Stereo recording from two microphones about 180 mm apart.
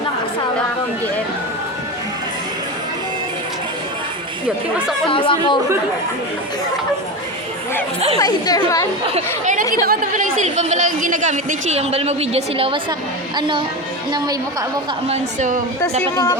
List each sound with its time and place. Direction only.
5.0 s speech: 30° left (ahead or behind)
8.2 s speech: 20° left (ahead or behind)
9.1 s a woman's voice: 45° right (ahead or behind); by 13.7 s 25° right (ahead or behind)
15.0 s a woman's voice: 40° right (ahead or behind)
15.8 s speech: 15° left (ahead or behind)